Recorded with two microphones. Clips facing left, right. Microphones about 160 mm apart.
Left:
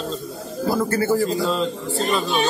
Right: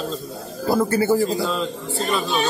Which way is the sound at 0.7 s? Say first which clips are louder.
Right 2 dB; 20° right (ahead or behind).